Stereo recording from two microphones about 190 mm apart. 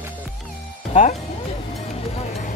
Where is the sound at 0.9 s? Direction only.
40° left (ahead or behind).